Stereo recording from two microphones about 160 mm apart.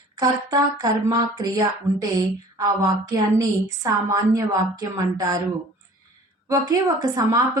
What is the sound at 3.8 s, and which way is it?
A woman's voice, 20° right (ahead or behind).